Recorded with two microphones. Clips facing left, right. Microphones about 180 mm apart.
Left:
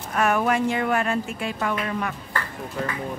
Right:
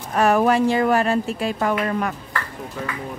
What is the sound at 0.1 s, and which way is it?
A woman's voice, 35° right (ahead or behind).